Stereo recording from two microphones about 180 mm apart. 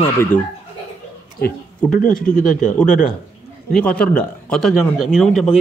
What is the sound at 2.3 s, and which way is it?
Speech, 50° left (ahead or behind).